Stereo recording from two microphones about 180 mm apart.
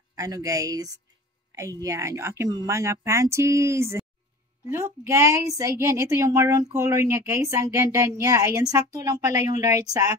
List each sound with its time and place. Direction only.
0.1 s a woman's voice: 20° right (ahead or behind)